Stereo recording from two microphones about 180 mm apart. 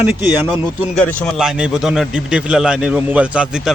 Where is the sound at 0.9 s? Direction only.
5° left (ahead or behind).